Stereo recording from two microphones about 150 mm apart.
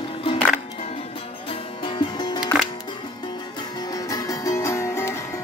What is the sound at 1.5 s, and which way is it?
Music, 35° left (ahead or behind).